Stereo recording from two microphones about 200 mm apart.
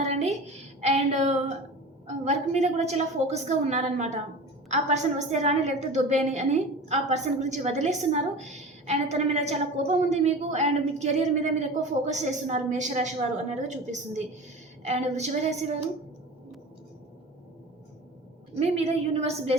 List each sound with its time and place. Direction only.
0.0 s a sound: 35° right (ahead or behind)
0.8 s a woman's voice: 35° right (ahead or behind)
18.6 s a woman's voice: 30° right (ahead or behind)